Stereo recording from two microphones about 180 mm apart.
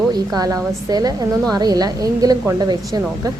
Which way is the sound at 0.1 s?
20° right (ahead or behind).